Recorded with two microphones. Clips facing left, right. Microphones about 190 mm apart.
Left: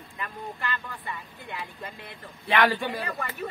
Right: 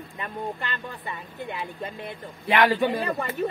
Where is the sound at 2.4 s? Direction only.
20° right (ahead or behind).